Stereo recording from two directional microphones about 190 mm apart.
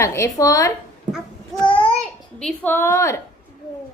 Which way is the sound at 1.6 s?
30° left (ahead or behind).